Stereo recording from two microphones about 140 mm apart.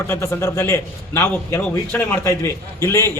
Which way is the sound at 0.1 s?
20° left (ahead or behind).